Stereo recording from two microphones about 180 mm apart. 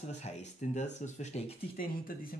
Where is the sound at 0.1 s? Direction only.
40° left (ahead or behind).